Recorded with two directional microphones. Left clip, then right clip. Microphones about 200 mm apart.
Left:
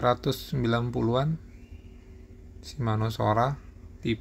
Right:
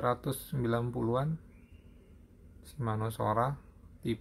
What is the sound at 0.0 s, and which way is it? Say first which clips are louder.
Speech: left 7 dB; 20° left (ahead or behind).